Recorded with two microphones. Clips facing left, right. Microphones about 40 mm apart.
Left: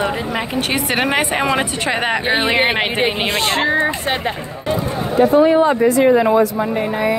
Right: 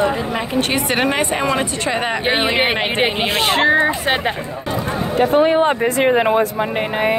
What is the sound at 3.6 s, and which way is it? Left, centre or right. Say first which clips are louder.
Speech: right 2 dB; right.